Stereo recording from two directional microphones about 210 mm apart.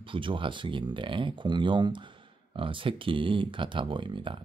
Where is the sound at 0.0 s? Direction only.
25° right (ahead or behind).